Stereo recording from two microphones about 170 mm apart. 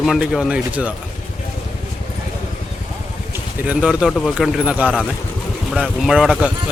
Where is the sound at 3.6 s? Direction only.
5° right (ahead or behind).